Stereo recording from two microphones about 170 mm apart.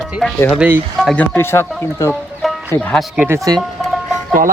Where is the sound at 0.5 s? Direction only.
10° right (ahead or behind).